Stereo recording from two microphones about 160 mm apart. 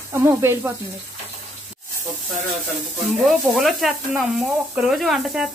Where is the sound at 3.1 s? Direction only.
Centre (ahead or behind).